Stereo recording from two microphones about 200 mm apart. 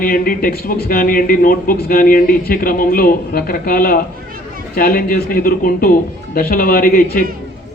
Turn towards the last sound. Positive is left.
turn(degrees=45)  # may be behind; listen again after turning